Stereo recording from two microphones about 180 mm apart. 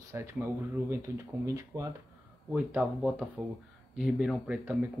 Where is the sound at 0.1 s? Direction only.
15° right (ahead or behind).